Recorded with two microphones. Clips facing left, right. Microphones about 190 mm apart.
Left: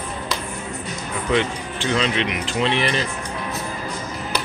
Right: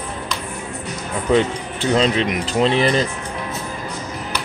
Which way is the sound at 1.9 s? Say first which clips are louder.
Right 5 dB; 35° right (ahead or behind).